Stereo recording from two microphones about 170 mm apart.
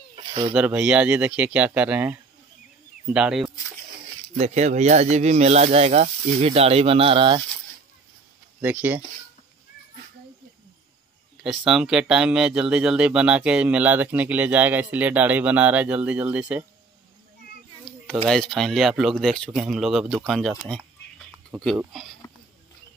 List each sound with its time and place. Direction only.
0.1 s a sound: 35° right (ahead or behind)
0.6 s speech: 5° right (ahead or behind)
4.4 s speech: 40° right (ahead or behind)
8.5 s speech: 10° right (ahead or behind)
11.3 s speech: 5° right (ahead or behind)
18.0 s speech: 5° left (ahead or behind)